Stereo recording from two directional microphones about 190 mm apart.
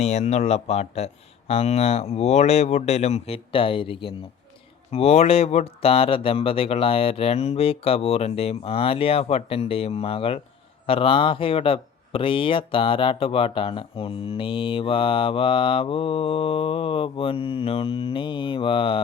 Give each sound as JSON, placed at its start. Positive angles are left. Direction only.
{"t": 0.0, "sound": "speech", "side_deg": 35}